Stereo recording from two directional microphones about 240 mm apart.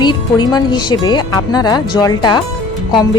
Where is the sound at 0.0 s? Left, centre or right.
Centre.